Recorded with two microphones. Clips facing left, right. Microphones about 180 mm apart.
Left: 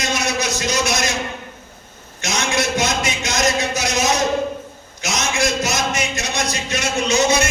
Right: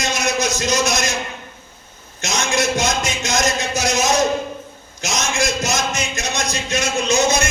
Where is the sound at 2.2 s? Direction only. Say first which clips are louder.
Right 1 dB; 45° right (ahead or behind).